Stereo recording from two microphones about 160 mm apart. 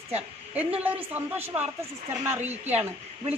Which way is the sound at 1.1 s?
10° right (ahead or behind).